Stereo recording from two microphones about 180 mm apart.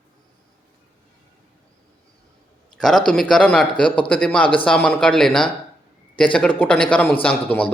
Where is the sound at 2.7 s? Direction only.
5° left (ahead or behind).